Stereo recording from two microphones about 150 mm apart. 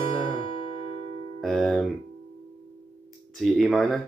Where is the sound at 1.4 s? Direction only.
Centre (ahead or behind).